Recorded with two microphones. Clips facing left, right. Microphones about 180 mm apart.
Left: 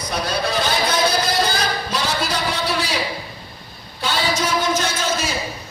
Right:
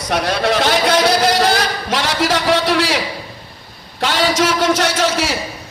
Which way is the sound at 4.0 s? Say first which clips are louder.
Right 6 dB; 90° right.